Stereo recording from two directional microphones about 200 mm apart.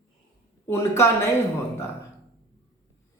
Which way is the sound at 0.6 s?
15° left (ahead or behind).